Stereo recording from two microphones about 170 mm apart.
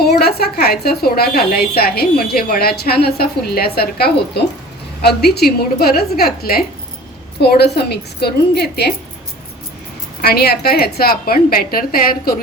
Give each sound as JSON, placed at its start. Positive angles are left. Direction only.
{"t": 0.0, "sound": "a woman's voice", "side_deg": 70}
{"t": 10.2, "sound": "a woman's voice", "side_deg": 65}